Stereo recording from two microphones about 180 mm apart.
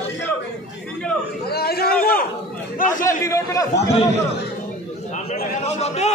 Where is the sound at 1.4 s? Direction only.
60° left (ahead or behind).